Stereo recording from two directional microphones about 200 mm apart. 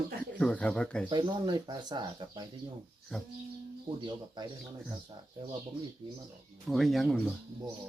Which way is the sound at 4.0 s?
20° right (ahead or behind).